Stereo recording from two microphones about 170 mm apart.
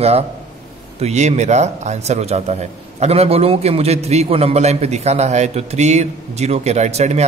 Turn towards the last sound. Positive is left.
turn(degrees=-40)  # may be behind; listen again after turning